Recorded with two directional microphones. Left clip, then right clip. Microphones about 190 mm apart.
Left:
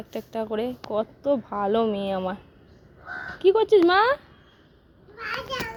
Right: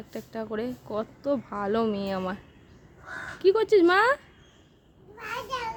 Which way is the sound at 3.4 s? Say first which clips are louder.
Left 2 dB; centre (ahead or behind).